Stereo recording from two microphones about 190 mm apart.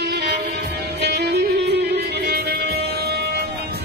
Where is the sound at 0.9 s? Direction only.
60° right (ahead or behind).